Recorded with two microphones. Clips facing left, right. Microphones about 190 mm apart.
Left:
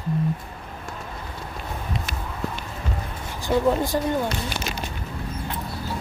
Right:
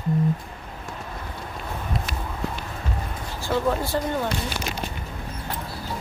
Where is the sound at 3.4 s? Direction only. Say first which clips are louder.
Left 3 dB; 15° left (ahead or behind).